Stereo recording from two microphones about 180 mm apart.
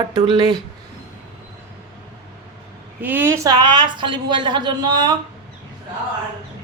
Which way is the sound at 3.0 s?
10° right (ahead or behind).